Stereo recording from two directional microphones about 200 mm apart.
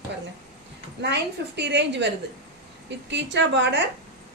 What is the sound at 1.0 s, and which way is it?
A woman's voice, 60° right (ahead or behind).